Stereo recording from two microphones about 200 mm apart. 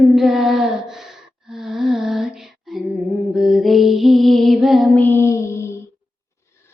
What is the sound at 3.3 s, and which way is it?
Music, centre (ahead or behind).